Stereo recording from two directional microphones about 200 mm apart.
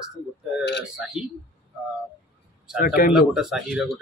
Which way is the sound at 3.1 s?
5° right (ahead or behind).